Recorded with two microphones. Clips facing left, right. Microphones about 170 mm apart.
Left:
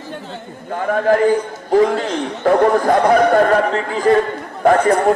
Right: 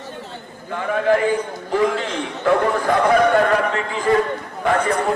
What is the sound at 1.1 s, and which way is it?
Speech, 40° left (ahead or behind).